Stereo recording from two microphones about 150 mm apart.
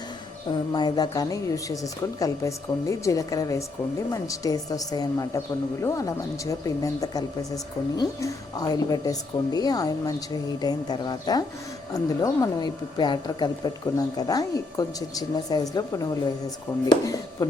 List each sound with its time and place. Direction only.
0.7 s speech: 25° left (ahead or behind)